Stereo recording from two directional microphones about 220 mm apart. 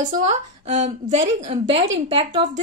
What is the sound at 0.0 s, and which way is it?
A woman's voice, 30° right (ahead or behind).